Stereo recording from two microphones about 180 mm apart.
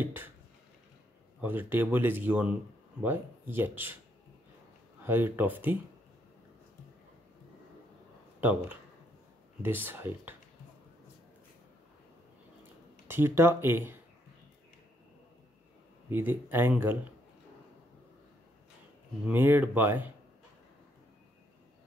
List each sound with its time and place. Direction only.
0.0 s a sound: 10° right (ahead or behind)
1.4 s speech: 10° right (ahead or behind)
5.0 s speech: 10° right (ahead or behind)
8.4 s speech: 10° right (ahead or behind)
13.1 s speech: 15° right (ahead or behind)
16.1 s speech: 10° right (ahead or behind)
19.2 s speech: 10° right (ahead or behind)